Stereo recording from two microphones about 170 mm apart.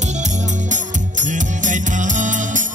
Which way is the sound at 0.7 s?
45° right (ahead or behind).